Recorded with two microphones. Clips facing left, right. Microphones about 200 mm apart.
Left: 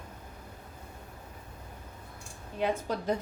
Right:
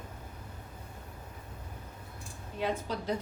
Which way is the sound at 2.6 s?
50° left (ahead or behind).